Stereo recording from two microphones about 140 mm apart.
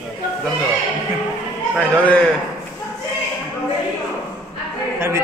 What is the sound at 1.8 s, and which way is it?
Speech, 10° left (ahead or behind).